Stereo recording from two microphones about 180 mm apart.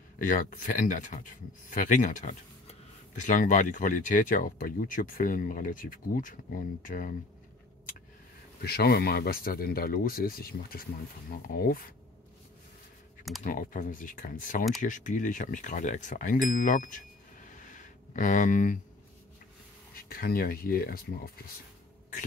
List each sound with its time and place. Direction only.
0.2 s speech: 50° left (ahead or behind)
8.6 s speech: 60° left (ahead or behind)
13.4 s speech: 50° left (ahead or behind)
20.0 s speech: 55° left (ahead or behind)